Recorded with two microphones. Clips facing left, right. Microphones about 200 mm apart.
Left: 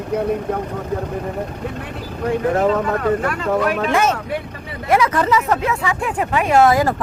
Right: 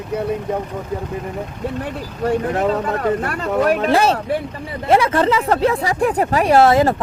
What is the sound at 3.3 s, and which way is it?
Speech, 35° right (ahead or behind).